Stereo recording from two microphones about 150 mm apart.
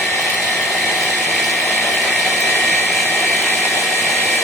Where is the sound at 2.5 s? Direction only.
15° left (ahead or behind).